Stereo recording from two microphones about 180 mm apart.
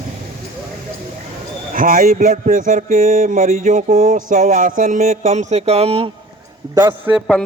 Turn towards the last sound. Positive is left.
turn(degrees=-10)  # may be behind; listen again after turning